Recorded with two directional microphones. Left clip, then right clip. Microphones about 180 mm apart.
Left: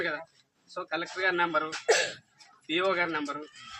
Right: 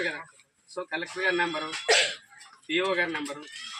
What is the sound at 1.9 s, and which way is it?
Speech, 40° left (ahead or behind).